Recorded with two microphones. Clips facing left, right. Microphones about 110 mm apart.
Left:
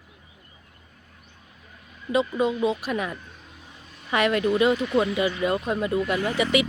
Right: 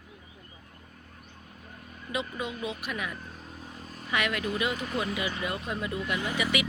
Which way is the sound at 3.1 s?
40° right (ahead or behind).